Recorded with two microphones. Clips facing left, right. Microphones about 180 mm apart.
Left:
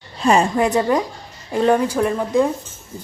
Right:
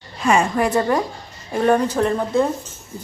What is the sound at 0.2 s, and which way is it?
Speech, 35° left (ahead or behind).